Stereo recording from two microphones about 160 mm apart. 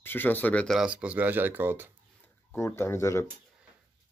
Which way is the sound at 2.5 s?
15° left (ahead or behind).